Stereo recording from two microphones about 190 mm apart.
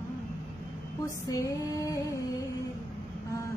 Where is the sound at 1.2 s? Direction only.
15° left (ahead or behind).